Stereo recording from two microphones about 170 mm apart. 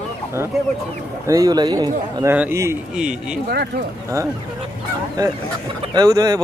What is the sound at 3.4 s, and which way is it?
Speech, 65° right (ahead or behind).